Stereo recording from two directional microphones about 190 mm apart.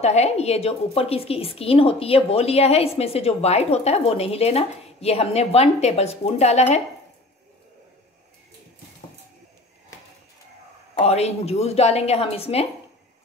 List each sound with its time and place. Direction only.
0.0 s a woman's voice: 35° left (ahead or behind)
11.0 s a woman's voice: 35° left (ahead or behind)